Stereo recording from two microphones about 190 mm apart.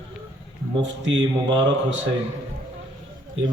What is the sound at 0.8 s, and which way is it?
A man's voice, 75° right (ahead or behind).